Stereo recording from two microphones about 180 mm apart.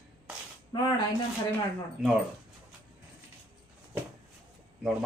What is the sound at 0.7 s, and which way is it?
Speech, 25° left (ahead or behind).